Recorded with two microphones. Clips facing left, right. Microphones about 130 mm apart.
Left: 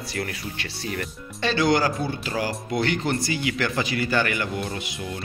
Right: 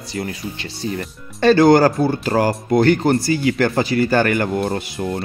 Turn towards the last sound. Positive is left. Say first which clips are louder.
# right 9 dB
turn(degrees=-40)  # may be behind; listen again after turning